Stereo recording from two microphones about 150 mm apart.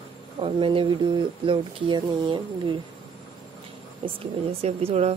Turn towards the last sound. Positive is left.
turn(degrees=-45)  # may be behind; listen again after turning